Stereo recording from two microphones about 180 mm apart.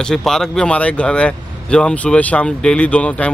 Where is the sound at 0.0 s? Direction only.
5° left (ahead or behind).